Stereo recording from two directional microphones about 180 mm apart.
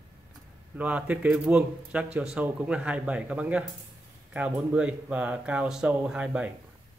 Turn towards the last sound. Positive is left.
turn(degrees=-5)  # may be behind; listen again after turning